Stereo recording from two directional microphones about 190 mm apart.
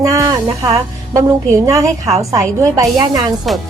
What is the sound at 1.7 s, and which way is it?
A woman's voice, 20° right (ahead or behind).